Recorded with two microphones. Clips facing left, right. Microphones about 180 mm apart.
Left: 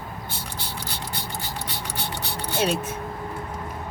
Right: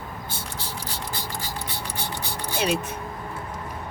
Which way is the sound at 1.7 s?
65° left (ahead or behind).